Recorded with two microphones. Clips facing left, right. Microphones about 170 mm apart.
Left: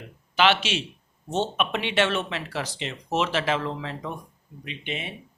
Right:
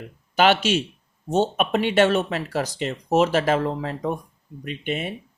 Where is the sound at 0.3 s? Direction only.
45° right (ahead or behind).